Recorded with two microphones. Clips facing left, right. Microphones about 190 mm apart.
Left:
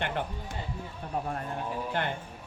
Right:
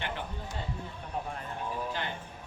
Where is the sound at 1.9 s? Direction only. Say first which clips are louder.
Left 5 dB; 55° left (ahead or behind).